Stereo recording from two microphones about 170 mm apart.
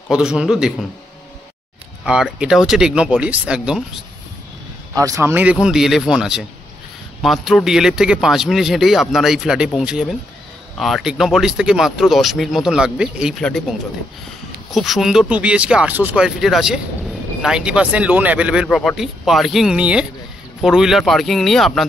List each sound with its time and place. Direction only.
0.1 s speech: 5° right (ahead or behind)
2.0 s speech: 5° right (ahead or behind)
4.9 s speech: 20° right (ahead or behind); by 21.8 s centre (ahead or behind)